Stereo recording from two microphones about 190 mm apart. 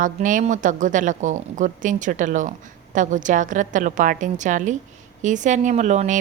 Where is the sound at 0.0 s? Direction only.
45° right (ahead or behind).